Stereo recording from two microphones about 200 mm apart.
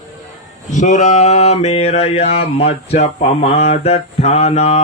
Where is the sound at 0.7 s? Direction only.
35° left (ahead or behind).